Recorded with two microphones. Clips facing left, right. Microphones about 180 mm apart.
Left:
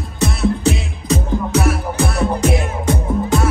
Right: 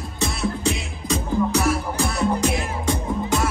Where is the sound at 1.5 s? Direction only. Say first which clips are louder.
Left 4 dB; 65° left (ahead or behind).